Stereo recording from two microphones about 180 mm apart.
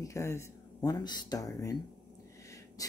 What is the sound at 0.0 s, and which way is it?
Speech, 15° left (ahead or behind).